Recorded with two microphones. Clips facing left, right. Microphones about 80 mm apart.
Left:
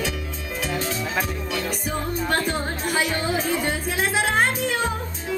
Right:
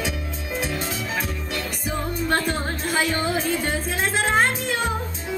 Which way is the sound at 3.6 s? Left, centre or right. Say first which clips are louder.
Even; centre.